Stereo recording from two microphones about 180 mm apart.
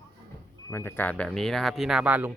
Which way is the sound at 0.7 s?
15° left (ahead or behind).